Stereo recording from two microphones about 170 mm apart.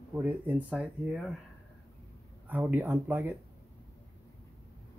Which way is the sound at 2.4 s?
10° right (ahead or behind).